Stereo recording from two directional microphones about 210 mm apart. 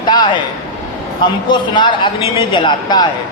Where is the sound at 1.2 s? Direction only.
20° left (ahead or behind).